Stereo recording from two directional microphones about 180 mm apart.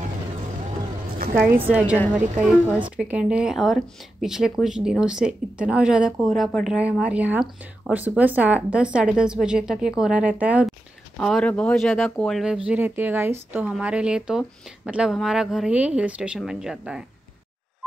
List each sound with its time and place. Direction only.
1.1 s a sound: 55° right (ahead or behind)
1.7 s speech: 5° right (ahead or behind)
3.0 s speech: 5° right (ahead or behind)
11.1 s speech: 5° left (ahead or behind)
12.6 s speech: 10° right (ahead or behind)